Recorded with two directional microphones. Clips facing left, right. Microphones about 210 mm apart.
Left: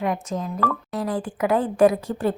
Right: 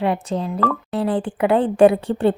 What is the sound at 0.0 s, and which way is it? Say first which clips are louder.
Speech: right 4 dB; 30° right (ahead or behind).